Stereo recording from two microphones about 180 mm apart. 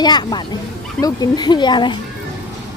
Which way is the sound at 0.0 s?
25° left (ahead or behind).